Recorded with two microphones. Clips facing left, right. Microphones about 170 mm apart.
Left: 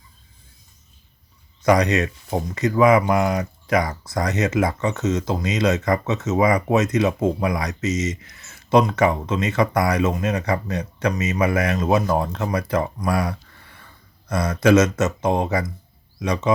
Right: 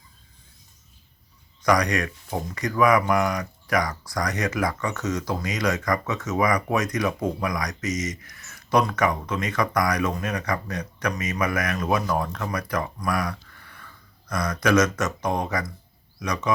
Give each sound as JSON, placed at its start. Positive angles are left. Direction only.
{"t": 1.6, "sound": "speech", "side_deg": 25}